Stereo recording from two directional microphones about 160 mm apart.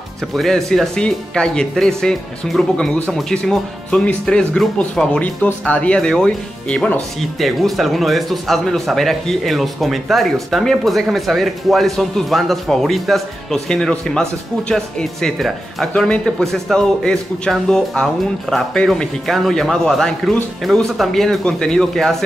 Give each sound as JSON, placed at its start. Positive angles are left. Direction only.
{"t": 0.4, "sound": "speech", "side_deg": 0}